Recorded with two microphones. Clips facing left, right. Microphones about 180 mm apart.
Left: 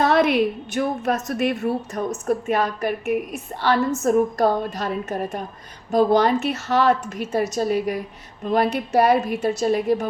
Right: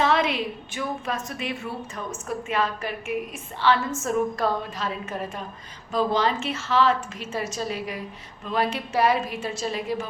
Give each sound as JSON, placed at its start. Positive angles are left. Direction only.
{"t": 0.2, "sound": "a woman's voice", "side_deg": 60}
{"t": 1.0, "sound": "a woman's voice", "side_deg": 45}
{"t": 7.2, "sound": "speech", "side_deg": 65}
{"t": 9.0, "sound": "a woman's voice", "side_deg": 60}
{"t": 9.2, "sound": "a woman's voice", "side_deg": 40}
{"t": 9.6, "sound": "speech", "side_deg": 50}